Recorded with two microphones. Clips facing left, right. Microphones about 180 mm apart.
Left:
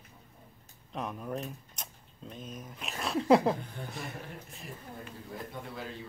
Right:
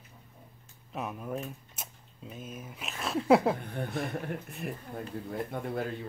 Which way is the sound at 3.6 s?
60° right (ahead or behind).